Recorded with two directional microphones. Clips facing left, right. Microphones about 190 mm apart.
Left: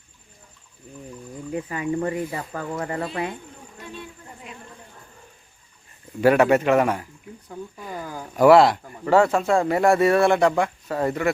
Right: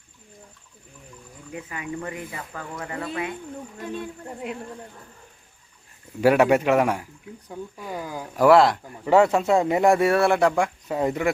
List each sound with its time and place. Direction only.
1.5 s speech: 35° left (ahead or behind)
3.8 s speech: 50° right (ahead or behind)
6.2 s a man's voice: 10° right (ahead or behind)
8.4 s speech: centre (ahead or behind)
9.0 s a man's voice: 20° right (ahead or behind)